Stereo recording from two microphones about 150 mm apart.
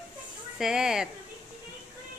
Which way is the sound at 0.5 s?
5° right (ahead or behind).